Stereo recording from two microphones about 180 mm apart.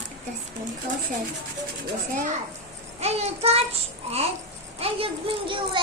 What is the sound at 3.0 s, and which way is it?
A child's voice, 35° right (ahead or behind).